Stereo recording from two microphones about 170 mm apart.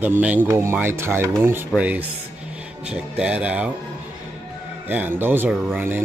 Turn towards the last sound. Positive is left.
turn(degrees=-10)  # may be behind; listen again after turning